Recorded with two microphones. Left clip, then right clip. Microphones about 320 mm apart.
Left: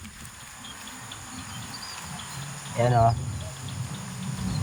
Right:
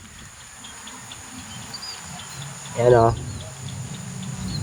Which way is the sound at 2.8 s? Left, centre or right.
Right.